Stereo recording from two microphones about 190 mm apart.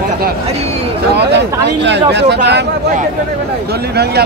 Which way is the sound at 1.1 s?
60° right (ahead or behind).